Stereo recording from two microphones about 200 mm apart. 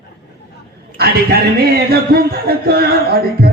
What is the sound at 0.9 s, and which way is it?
A man's voice, 50° right (ahead or behind).